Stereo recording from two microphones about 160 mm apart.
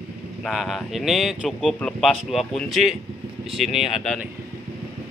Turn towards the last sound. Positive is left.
turn(degrees=0)  # may be behind; listen again after turning